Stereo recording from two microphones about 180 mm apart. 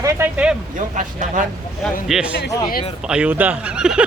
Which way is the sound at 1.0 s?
45° right (ahead or behind).